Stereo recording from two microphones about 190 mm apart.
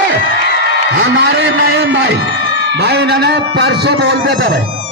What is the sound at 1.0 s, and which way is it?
A man's voice, 65° right (ahead or behind).